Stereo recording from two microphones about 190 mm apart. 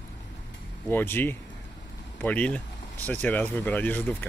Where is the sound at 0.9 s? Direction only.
10° left (ahead or behind).